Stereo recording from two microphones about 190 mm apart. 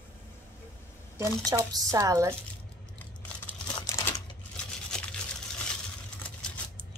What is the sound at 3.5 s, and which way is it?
Crumpling, 15° left (ahead or behind).